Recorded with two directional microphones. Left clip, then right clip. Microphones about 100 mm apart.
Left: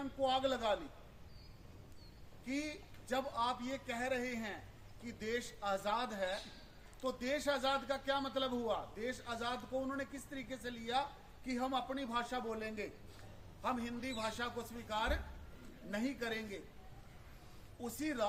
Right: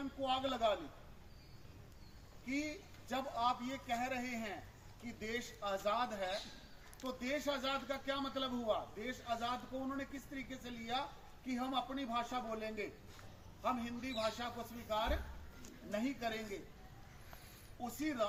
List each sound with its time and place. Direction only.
0.3 s a man's voice: 50° left (ahead or behind)
2.5 s a man's voice: 45° left (ahead or behind)
17.8 s a man's voice: 45° left (ahead or behind)